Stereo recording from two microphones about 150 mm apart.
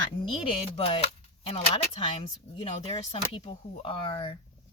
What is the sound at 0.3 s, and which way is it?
Speech, 35° left (ahead or behind).